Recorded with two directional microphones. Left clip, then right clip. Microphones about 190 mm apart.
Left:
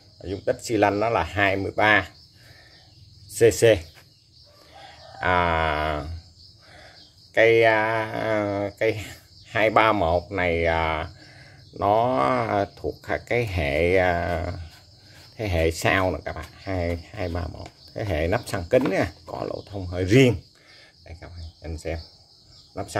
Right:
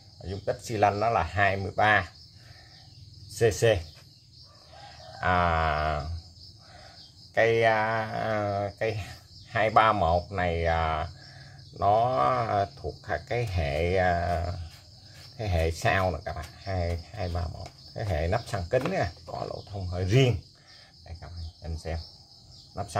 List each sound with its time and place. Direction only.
0.2 s speech: 30° left (ahead or behind)
3.3 s speech: 35° left (ahead or behind)
4.8 s chicken: 30° left (ahead or behind)
7.3 s speech: 30° left (ahead or behind)
21.1 s cricket: 30° left (ahead or behind)
22.8 s speech: 30° left (ahead or behind)